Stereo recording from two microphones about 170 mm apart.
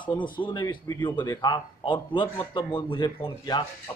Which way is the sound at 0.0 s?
30° left (ahead or behind).